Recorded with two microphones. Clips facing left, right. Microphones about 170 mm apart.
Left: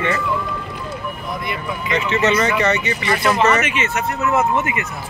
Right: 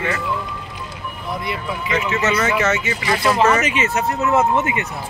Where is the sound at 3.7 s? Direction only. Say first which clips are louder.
Right 2 dB; 35° right (ahead or behind).